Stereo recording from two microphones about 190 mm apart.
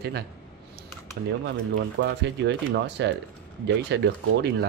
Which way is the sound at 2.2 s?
70° right (ahead or behind).